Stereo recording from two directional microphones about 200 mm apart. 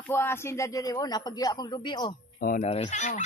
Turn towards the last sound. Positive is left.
turn(degrees=35)  # may be behind; listen again after turning